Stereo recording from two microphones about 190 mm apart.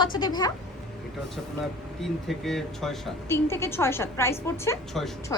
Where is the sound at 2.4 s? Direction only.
Centre (ahead or behind).